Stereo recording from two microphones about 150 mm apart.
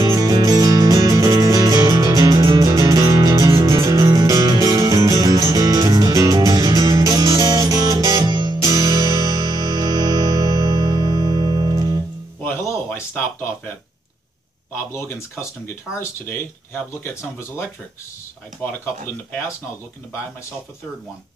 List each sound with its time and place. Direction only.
0.3 s music: 25° right (ahead or behind)
12.4 s a sound: 15° left (ahead or behind)
14.9 s speech: 15° left (ahead or behind)